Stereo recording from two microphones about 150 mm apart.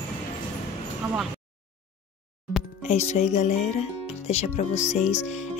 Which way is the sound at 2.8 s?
50° left (ahead or behind).